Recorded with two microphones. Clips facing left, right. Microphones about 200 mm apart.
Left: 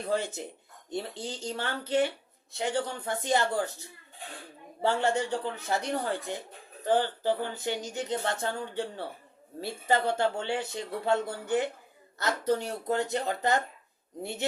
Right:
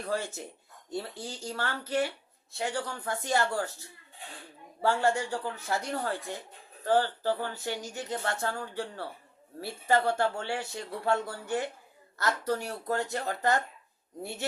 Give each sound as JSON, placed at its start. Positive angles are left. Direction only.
{"t": 0.1, "sound": "speech", "side_deg": 20}